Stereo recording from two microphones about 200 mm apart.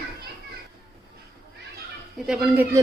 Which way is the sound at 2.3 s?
5° right (ahead or behind).